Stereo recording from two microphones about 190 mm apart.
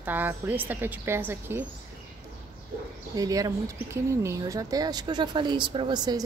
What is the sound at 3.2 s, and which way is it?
Speech, 20° right (ahead or behind).